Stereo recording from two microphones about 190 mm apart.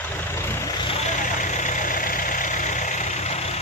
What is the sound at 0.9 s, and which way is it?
Vehicle, 40° left (ahead or behind).